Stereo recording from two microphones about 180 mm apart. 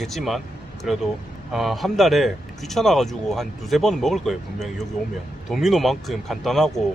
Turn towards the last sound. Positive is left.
turn(degrees=0)  # may be behind; listen again after turning